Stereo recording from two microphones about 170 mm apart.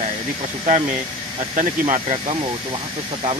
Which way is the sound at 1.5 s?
45° right (ahead or behind).